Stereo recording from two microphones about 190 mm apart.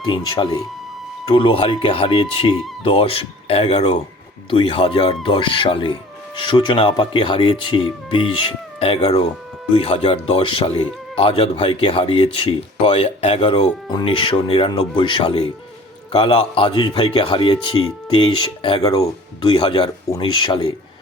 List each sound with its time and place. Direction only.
0.0 s speech: 25° left (ahead or behind)